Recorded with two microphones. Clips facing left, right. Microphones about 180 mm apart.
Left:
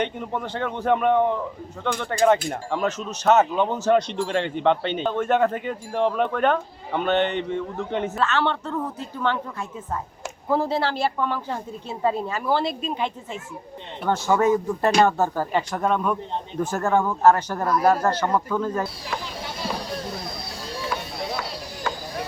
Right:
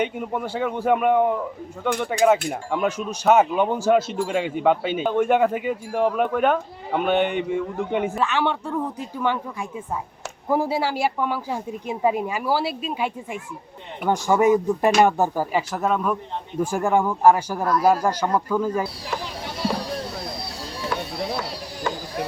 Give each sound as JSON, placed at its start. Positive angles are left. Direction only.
{"t": 0.0, "sound": "speech", "side_deg": -10}